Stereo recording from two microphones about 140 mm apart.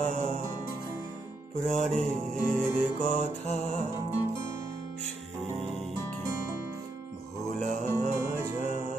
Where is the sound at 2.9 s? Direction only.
55° left (ahead or behind).